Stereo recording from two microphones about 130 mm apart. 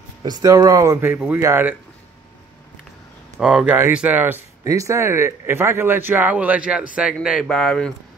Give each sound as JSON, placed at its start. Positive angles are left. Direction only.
{"t": 0.2, "sound": "speech", "side_deg": -30}
{"t": 1.0, "sound": "a man's voice", "side_deg": -15}
{"t": 3.3, "sound": "a man's voice", "side_deg": 0}
{"t": 4.6, "sound": "a man's voice", "side_deg": -25}